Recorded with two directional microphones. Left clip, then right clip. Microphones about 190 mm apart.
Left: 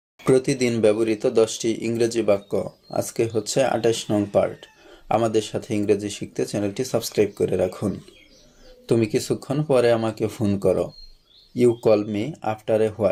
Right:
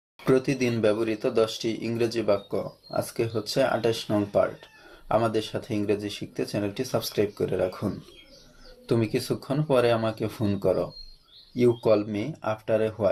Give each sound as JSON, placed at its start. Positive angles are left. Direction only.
{"t": 0.3, "sound": "speech", "side_deg": 35}